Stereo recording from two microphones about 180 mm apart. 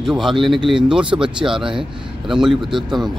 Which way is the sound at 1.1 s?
30° right (ahead or behind).